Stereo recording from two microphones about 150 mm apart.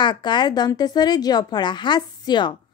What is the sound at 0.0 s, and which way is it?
Speech, 30° left (ahead or behind).